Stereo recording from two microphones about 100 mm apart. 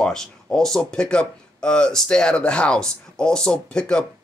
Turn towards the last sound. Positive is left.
turn(degrees=10)  # may be behind; listen again after turning